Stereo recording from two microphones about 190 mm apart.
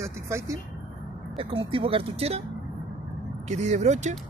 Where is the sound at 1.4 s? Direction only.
30° right (ahead or behind).